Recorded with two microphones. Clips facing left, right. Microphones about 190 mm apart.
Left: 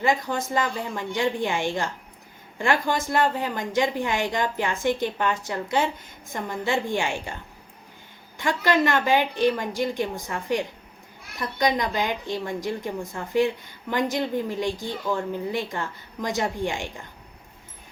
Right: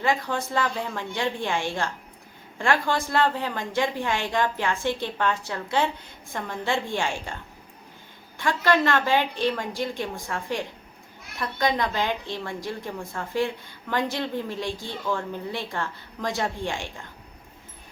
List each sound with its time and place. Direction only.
0.0 s a woman's voice: 15° left (ahead or behind)
8.4 s a woman's voice: 15° left (ahead or behind)